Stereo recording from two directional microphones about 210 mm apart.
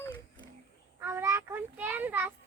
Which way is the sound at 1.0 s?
10° right (ahead or behind).